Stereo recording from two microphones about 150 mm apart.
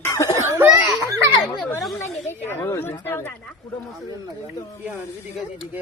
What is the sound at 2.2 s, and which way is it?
Speech, 15° left (ahead or behind).